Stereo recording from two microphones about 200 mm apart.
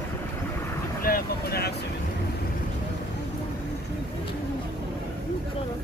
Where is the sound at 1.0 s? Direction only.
50° left (ahead or behind).